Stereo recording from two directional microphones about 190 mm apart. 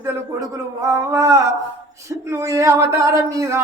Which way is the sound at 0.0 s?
15° right (ahead or behind).